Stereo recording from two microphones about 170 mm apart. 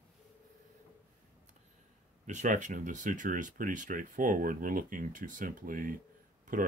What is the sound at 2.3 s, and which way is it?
Speech, 45° right (ahead or behind).